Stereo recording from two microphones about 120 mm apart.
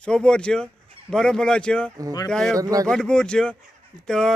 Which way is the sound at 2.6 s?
30° right (ahead or behind).